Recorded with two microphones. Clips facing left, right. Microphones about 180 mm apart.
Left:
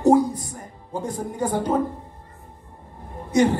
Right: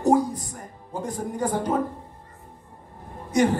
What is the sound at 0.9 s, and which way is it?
Music, 20° left (ahead or behind).